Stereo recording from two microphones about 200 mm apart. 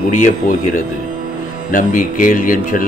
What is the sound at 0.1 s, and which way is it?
Speech, 40° left (ahead or behind).